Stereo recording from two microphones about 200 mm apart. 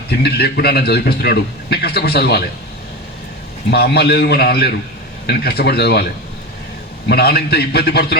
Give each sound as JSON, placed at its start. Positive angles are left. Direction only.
{"t": 0.1, "sound": "a man's voice", "side_deg": 55}
{"t": 3.7, "sound": "a man's voice", "side_deg": 55}
{"t": 7.1, "sound": "a man's voice", "side_deg": 50}